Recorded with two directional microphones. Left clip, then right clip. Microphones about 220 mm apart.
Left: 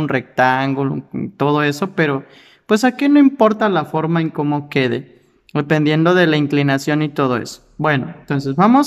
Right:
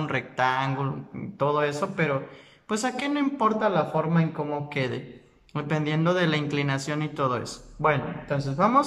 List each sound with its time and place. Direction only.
0.0 s speech: 40° left (ahead or behind)